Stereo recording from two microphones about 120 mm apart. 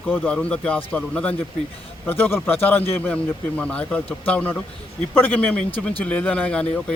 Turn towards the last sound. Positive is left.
turn(degrees=10)  # may be behind; listen again after turning